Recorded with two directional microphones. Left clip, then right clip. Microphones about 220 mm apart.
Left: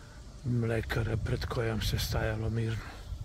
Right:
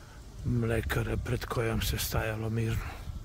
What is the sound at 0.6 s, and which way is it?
Speech, 15° right (ahead or behind).